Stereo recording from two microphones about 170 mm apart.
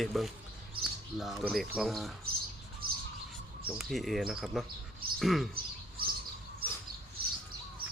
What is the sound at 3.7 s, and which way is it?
Speech, centre (ahead or behind).